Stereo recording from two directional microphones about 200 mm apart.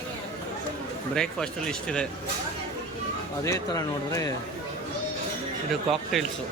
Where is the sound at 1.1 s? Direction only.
5° left (ahead or behind).